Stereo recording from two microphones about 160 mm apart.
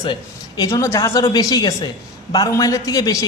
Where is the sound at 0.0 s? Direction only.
25° left (ahead or behind).